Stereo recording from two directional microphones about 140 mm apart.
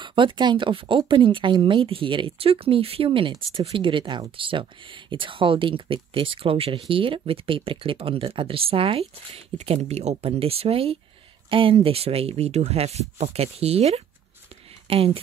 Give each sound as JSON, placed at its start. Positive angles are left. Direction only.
{"t": 0.0, "sound": "speech", "side_deg": -35}